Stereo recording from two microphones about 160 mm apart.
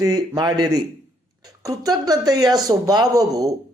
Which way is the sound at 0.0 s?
25° right (ahead or behind).